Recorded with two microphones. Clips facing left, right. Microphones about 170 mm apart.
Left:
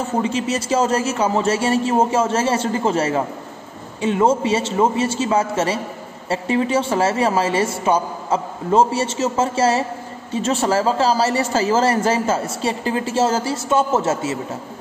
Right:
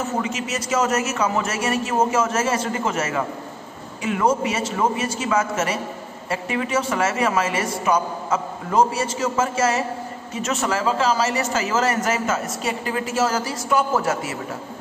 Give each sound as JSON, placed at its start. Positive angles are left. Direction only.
{"t": 0.2, "sound": "a man's voice", "side_deg": 30}